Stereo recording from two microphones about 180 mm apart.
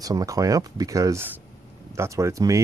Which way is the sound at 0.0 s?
20° right (ahead or behind).